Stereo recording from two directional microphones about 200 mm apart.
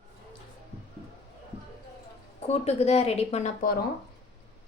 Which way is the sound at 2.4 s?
30° left (ahead or behind).